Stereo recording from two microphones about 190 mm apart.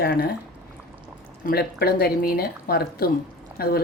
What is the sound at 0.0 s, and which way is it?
Speech, 55° left (ahead or behind).